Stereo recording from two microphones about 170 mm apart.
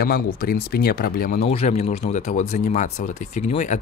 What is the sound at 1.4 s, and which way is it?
Speech, 40° left (ahead or behind).